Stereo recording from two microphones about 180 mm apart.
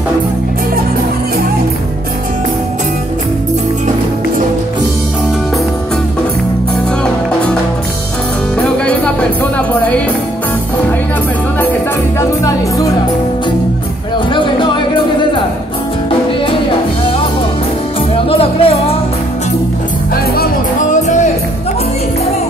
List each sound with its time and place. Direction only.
8.8 s music: 5° left (ahead or behind)
12.2 s music: 20° left (ahead or behind)
14.3 s music: 25° left (ahead or behind)
18.1 s music: 30° left (ahead or behind)
20.9 s music: 45° left (ahead or behind)